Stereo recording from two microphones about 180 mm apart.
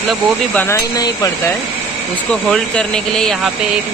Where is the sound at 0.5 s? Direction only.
15° left (ahead or behind).